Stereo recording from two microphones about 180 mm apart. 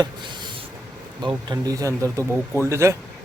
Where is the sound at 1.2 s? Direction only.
20° right (ahead or behind).